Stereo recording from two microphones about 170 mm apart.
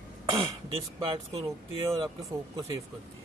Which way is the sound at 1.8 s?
25° right (ahead or behind).